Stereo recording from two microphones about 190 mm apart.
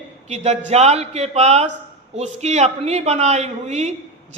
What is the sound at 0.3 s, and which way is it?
A man's voice, 35° right (ahead or behind).